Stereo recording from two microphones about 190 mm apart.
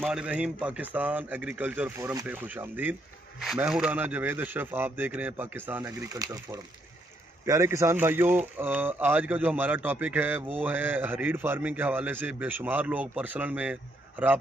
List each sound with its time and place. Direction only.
0.0 s speech: 5° right (ahead or behind)